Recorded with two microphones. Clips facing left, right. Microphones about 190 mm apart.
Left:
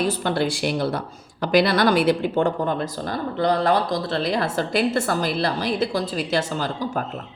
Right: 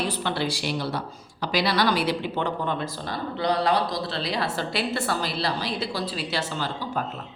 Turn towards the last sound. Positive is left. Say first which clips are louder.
# left 4 dB
turn(degrees=45)  # may be behind; listen again after turning